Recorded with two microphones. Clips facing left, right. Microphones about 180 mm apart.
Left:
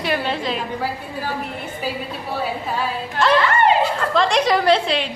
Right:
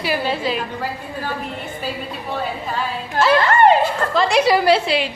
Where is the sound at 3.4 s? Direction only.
45° right (ahead or behind).